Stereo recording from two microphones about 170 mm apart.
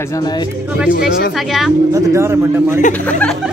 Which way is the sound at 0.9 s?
60° left (ahead or behind).